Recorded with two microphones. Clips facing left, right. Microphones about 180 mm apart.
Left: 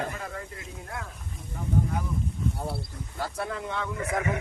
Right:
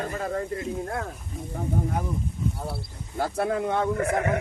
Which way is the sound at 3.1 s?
50° right (ahead or behind).